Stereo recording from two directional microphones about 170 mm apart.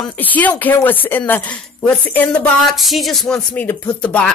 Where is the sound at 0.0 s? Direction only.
10° left (ahead or behind).